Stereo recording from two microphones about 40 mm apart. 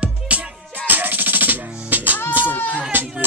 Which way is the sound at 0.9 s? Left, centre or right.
Right.